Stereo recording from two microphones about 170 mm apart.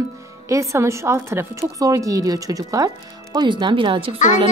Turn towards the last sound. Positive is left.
turn(degrees=-30)  # may be behind; listen again after turning